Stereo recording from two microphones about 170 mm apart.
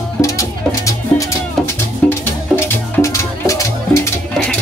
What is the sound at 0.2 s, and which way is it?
Music, 20° left (ahead or behind).